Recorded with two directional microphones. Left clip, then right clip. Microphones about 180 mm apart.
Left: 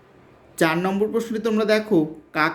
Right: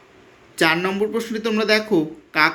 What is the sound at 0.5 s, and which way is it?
Speech, 15° left (ahead or behind).